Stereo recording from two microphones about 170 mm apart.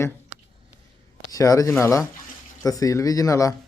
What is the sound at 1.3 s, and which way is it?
A man's voice, 20° left (ahead or behind).